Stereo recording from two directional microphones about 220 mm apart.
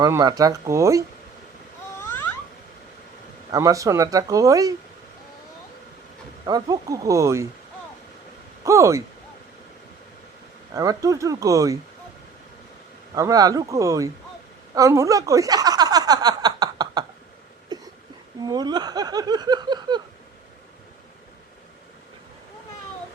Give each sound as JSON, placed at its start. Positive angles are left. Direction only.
{"t": 0.0, "sound": "speech", "side_deg": -15}
{"t": 2.0, "sound": "a sound", "side_deg": 10}
{"t": 3.5, "sound": "speech", "side_deg": -15}
{"t": 6.4, "sound": "speech", "side_deg": -15}
{"t": 8.6, "sound": "speech", "side_deg": -15}
{"t": 10.8, "sound": "speech", "side_deg": -15}
{"t": 13.1, "sound": "speech", "side_deg": -15}
{"t": 14.8, "sound": "a sound", "side_deg": -15}
{"t": 18.4, "sound": "speech", "side_deg": -20}